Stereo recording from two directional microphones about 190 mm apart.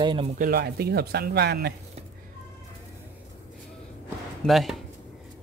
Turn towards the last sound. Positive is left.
turn(degrees=0)  # may be behind; listen again after turning